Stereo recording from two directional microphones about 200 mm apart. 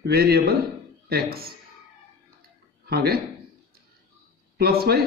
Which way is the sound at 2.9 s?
50° right (ahead or behind).